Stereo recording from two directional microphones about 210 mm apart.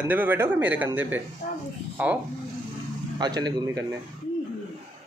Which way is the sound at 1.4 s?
35° left (ahead or behind).